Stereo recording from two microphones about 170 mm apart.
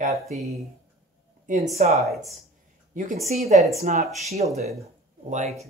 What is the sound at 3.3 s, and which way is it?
Speech, 40° right (ahead or behind).